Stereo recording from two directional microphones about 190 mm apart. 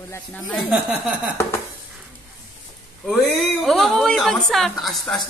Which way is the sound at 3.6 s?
Centre (ahead or behind).